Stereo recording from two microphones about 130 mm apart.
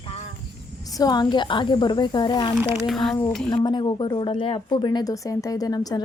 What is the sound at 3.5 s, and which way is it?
A woman's voice, 35° left (ahead or behind).